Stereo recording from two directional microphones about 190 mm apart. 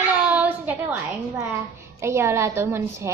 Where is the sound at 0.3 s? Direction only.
10° right (ahead or behind).